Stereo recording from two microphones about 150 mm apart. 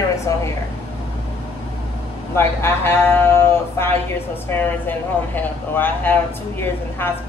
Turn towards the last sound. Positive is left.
turn(degrees=15)  # may be behind; listen again after turning